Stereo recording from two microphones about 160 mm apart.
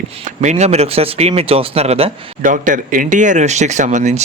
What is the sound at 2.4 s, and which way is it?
Speech, 55° right (ahead or behind).